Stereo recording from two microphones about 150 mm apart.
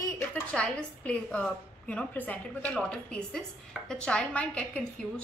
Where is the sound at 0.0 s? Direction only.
10° left (ahead or behind).